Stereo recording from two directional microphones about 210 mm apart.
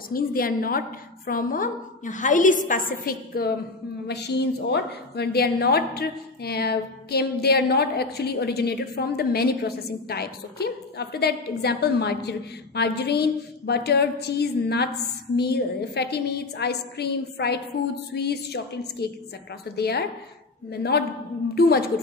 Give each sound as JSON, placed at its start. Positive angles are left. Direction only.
{"t": 0.1, "sound": "a woman's voice", "side_deg": 45}